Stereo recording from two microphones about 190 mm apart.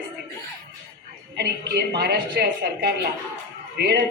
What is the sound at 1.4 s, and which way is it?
A woman's voice, 60° right (ahead or behind).